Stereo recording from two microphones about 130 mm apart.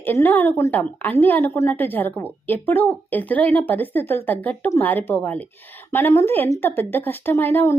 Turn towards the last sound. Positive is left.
turn(degrees=15)  # may be behind; listen again after turning